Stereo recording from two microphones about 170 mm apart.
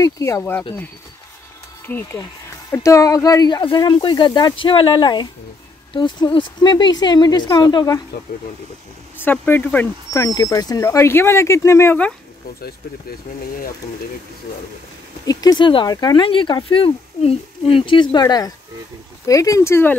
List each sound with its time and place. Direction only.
0.0 s speech: 15° left (ahead or behind)
1.9 s speech: 10° left (ahead or behind)
9.2 s speech: 10° left (ahead or behind)
15.2 s speech: 20° left (ahead or behind)